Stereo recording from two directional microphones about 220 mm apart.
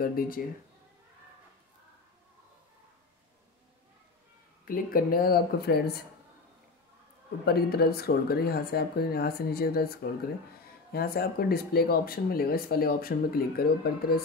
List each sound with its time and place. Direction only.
0.0 s speech: 40° left (ahead or behind)
4.6 s speech: 40° left (ahead or behind)
7.4 s speech: 45° left (ahead or behind)